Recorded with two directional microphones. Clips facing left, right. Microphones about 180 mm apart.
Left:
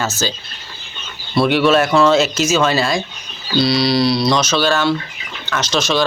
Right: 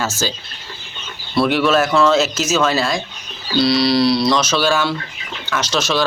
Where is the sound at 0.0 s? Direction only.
10° right (ahead or behind).